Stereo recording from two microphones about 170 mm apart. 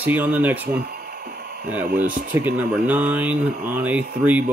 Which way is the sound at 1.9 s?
55° right (ahead or behind).